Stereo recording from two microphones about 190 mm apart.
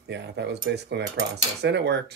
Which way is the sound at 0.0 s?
65° right (ahead or behind).